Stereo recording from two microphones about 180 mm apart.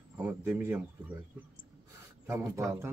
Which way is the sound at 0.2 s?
10° right (ahead or behind).